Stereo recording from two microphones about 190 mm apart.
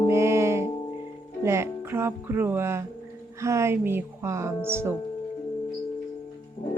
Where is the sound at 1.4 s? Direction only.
15° right (ahead or behind).